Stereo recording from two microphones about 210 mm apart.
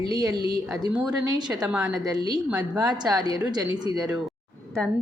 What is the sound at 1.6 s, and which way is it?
Speech, 5° right (ahead or behind).